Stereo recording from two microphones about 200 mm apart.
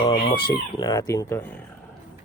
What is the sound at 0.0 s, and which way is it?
Speech, 25° left (ahead or behind).